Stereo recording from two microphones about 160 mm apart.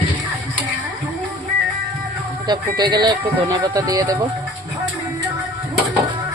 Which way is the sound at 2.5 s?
25° right (ahead or behind).